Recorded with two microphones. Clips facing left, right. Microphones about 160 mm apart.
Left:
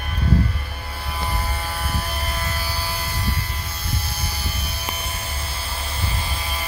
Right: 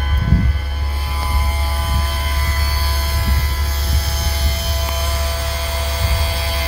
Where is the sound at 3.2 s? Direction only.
75° right (ahead or behind).